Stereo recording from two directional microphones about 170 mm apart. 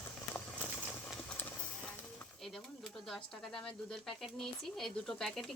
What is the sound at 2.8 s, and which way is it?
Pigeon, centre (ahead or behind).